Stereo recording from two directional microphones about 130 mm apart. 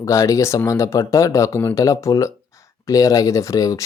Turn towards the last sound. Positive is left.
turn(degrees=25)  # may be behind; listen again after turning